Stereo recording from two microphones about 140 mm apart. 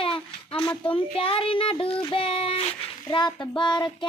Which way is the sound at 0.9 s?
40° left (ahead or behind).